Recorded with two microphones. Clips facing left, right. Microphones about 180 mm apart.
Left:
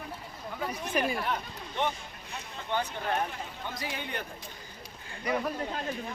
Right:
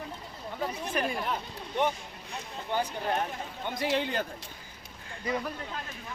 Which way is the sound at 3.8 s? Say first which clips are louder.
Right 10 dB; 85° right.